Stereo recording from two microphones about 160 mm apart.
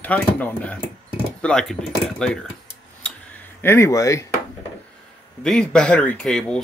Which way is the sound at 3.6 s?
15° left (ahead or behind).